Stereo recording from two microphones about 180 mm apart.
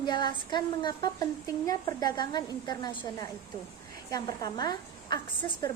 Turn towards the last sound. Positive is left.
turn(degrees=25)  # may be behind; listen again after turning